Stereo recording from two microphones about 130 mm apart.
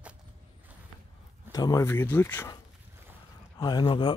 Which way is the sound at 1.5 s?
25° left (ahead or behind).